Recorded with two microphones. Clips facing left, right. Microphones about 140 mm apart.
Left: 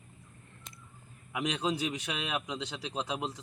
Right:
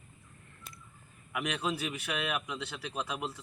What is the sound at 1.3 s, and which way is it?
Speech, 25° left (ahead or behind).